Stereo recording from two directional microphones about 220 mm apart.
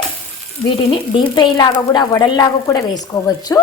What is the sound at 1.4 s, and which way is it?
A woman's voice, 20° left (ahead or behind).